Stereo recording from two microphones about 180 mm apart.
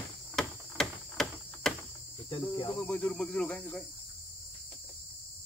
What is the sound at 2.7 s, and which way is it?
Cricket, 5° left (ahead or behind).